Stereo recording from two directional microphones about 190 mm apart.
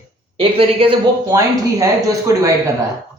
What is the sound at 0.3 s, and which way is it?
Speech, 30° right (ahead or behind).